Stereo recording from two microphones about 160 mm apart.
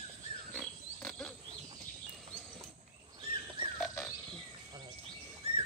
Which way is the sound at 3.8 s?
5° left (ahead or behind).